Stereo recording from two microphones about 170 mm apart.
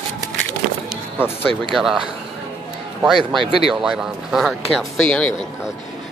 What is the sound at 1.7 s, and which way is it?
Speech, centre (ahead or behind).